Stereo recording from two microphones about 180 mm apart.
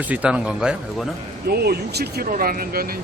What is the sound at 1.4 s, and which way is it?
Speech, 60° right (ahead or behind).